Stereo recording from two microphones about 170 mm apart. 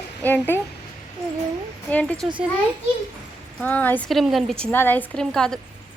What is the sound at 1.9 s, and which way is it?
Speech, 10° left (ahead or behind).